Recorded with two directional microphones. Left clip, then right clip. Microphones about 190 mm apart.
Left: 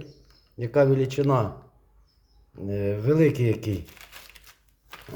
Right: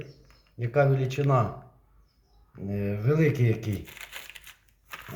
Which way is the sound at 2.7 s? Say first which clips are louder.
Left 4 dB; 45° left (ahead or behind).